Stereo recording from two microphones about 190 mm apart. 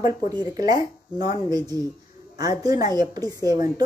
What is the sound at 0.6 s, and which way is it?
Speech, 20° right (ahead or behind).